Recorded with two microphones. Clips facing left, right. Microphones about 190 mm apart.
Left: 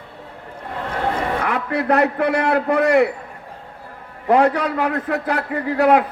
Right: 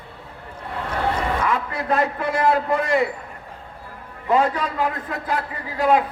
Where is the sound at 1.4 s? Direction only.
70° left (ahead or behind).